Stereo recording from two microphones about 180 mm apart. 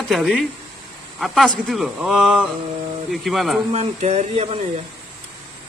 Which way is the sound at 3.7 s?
35° right (ahead or behind).